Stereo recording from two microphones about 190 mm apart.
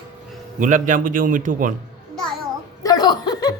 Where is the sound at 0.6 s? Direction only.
40° right (ahead or behind).